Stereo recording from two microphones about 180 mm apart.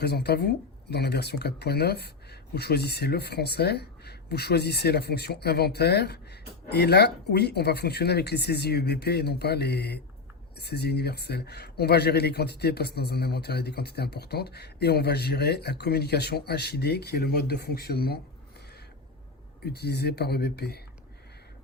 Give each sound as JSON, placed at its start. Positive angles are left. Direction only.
{"t": 0.0, "sound": "speech", "side_deg": 60}
{"t": 19.6, "sound": "speech", "side_deg": 65}